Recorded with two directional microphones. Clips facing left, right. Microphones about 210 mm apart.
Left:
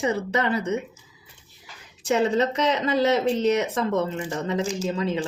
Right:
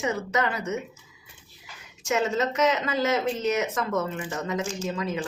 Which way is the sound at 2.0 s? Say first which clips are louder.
Left 4 dB; 35° left (ahead or behind).